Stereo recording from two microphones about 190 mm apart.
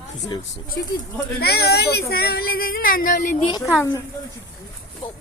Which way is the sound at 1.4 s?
55° left (ahead or behind).